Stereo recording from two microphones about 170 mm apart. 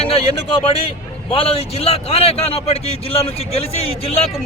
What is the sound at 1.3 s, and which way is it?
A man's voice, 35° left (ahead or behind).